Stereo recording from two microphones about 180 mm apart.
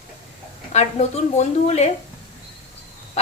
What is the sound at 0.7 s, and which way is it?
A woman's voice, 40° left (ahead or behind).